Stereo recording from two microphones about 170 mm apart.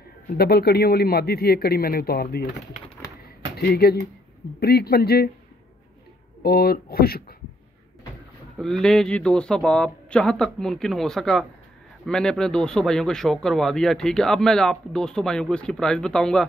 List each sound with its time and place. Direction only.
0.4 s speech: 70° left (ahead or behind)
3.5 s speech: 70° left (ahead or behind)
6.4 s speech: 65° left (ahead or behind)
8.5 s a man's voice: centre (ahead or behind)